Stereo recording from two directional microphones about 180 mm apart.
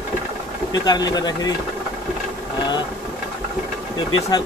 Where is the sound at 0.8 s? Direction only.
20° left (ahead or behind).